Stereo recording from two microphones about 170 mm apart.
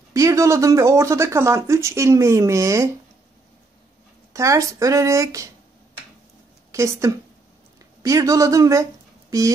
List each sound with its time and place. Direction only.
0.1 s speech: 20° right (ahead or behind)
4.3 s speech: 20° right (ahead or behind)
6.7 s a woman's voice: 15° right (ahead or behind)